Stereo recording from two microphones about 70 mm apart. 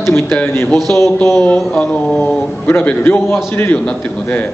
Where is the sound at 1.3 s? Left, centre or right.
Centre.